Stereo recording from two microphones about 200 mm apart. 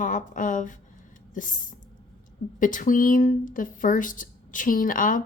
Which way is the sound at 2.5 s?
40° left (ahead or behind).